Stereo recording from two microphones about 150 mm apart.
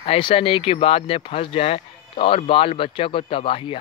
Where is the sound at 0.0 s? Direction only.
40° left (ahead or behind).